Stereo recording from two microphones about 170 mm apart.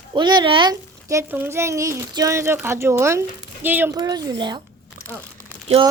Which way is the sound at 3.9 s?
25° right (ahead or behind).